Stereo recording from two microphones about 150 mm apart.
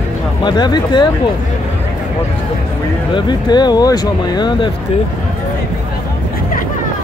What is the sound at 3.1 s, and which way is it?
Speech, 30° left (ahead or behind).